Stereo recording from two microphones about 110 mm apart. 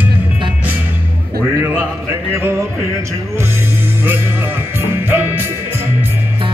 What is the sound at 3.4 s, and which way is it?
Music, 20° right (ahead or behind).